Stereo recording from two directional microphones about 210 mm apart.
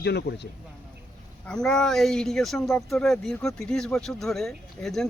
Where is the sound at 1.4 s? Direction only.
5° left (ahead or behind).